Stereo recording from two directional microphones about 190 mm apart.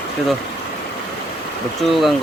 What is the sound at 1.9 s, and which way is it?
Speech, centre (ahead or behind).